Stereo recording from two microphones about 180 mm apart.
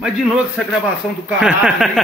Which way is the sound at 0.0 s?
5° right (ahead or behind).